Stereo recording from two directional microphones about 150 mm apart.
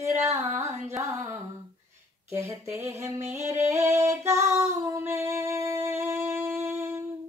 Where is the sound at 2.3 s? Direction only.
20° right (ahead or behind).